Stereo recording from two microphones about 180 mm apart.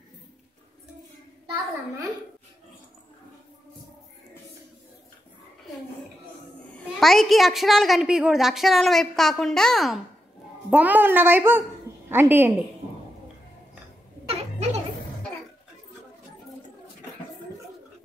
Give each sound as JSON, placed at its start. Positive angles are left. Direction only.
{"t": 7.0, "sound": "a woman's voice", "side_deg": 0}
{"t": 10.7, "sound": "a woman's voice", "side_deg": -10}
{"t": 14.3, "sound": "a sound", "side_deg": -35}